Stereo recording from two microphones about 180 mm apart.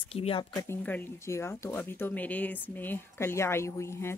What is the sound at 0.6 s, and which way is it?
Speech, 10° left (ahead or behind).